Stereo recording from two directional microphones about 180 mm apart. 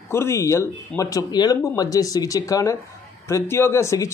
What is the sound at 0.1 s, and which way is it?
Speech, 15° left (ahead or behind).